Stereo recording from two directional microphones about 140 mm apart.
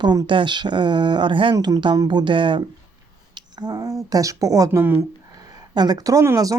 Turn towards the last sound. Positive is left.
turn(degrees=-25)  # may be behind; listen again after turning